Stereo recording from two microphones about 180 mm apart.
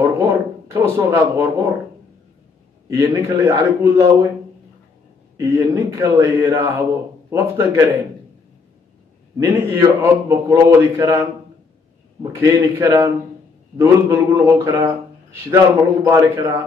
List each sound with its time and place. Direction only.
0.0 s a sound: 15° right (ahead or behind)
2.9 s a man's voice: 15° right (ahead or behind)
5.4 s a man's voice: 15° right (ahead or behind)
9.5 s a man's voice: 15° right (ahead or behind)